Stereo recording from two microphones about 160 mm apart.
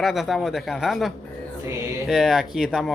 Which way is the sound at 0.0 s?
Centre (ahead or behind).